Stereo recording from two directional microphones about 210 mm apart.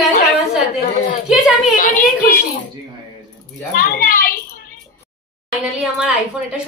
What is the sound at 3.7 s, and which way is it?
A woman's voice, 45° left (ahead or behind).